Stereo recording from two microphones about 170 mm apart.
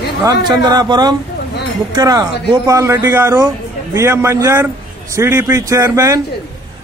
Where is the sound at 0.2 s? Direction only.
25° right (ahead or behind).